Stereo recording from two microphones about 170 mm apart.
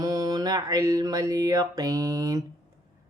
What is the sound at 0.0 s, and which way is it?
Mantra, 20° right (ahead or behind).